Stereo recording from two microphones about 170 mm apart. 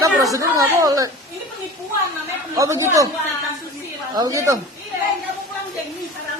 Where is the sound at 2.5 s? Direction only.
20° right (ahead or behind).